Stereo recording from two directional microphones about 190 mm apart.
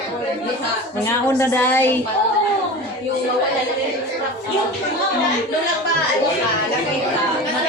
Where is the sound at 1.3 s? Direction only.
10° left (ahead or behind).